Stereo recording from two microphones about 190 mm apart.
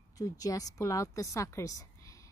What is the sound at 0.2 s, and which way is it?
A woman's voice, 20° left (ahead or behind).